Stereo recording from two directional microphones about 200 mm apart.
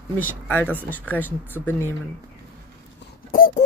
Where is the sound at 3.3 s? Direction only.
45° left (ahead or behind).